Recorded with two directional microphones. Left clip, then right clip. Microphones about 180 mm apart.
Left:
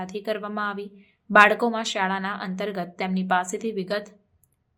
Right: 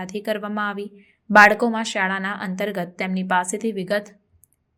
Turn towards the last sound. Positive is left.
turn(degrees=-15)  # may be behind; listen again after turning